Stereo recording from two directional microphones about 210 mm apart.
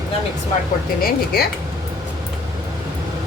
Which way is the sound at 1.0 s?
45° left (ahead or behind).